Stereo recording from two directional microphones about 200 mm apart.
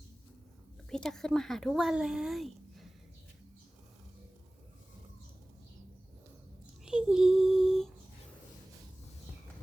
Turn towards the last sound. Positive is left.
turn(degrees=0)  # may be behind; listen again after turning